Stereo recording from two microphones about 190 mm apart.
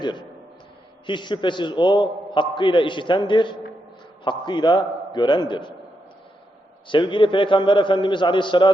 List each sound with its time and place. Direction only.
0.0 s a man's voice: 25° left (ahead or behind)
6.8 s a man's voice: 25° left (ahead or behind)